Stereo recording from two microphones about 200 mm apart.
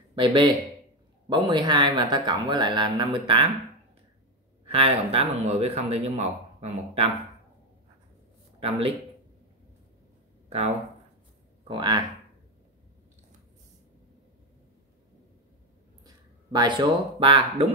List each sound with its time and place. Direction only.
0.1 s speech: 25° right (ahead or behind)
4.6 s speech: 30° right (ahead or behind)
8.5 s a man's voice: 30° right (ahead or behind)
11.6 s speech: 25° right (ahead or behind)
16.5 s speech: 20° right (ahead or behind)